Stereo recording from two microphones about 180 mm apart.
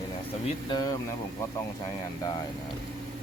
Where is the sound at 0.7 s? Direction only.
20° left (ahead or behind).